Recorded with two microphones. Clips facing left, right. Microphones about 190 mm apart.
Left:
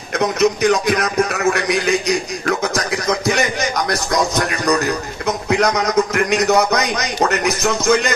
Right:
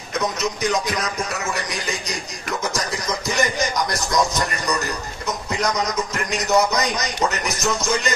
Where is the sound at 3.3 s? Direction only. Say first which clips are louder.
Left 4 dB; 65° left (ahead or behind).